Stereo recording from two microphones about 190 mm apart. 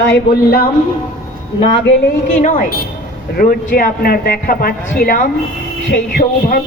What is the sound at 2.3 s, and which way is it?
A man's voice, 40° left (ahead or behind).